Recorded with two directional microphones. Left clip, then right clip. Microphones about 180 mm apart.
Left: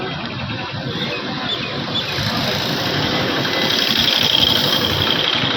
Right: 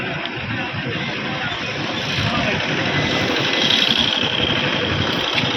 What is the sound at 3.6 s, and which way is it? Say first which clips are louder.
Vehicle: right 1 dB; 30° left (ahead or behind).